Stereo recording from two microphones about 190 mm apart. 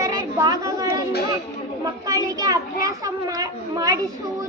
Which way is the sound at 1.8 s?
20° right (ahead or behind).